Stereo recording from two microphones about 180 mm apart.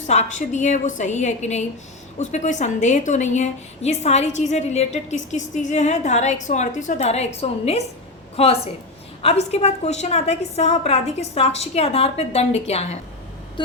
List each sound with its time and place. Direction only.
0.1 s a woman's voice: 40° left (ahead or behind)